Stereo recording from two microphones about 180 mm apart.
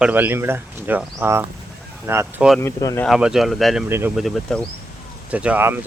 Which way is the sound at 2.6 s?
15° left (ahead or behind).